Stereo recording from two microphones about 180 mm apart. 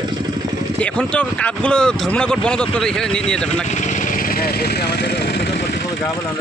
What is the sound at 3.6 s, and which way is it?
Vehicle, 40° left (ahead or behind).